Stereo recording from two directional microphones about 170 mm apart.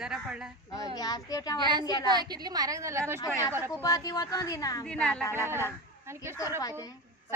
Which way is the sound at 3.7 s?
20° left (ahead or behind).